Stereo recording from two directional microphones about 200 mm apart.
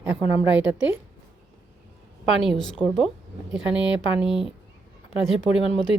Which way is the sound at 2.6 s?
Centre (ahead or behind).